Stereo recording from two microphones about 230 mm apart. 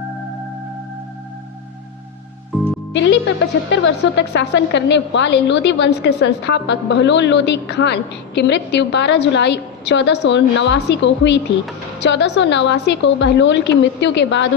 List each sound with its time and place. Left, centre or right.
2.5 s music: centre
2.9 s a woman's voice: left